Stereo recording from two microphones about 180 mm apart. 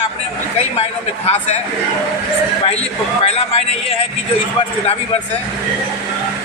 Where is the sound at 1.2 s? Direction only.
35° left (ahead or behind).